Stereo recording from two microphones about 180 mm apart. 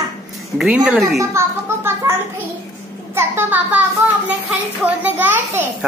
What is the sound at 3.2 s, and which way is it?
Speech, 10° right (ahead or behind).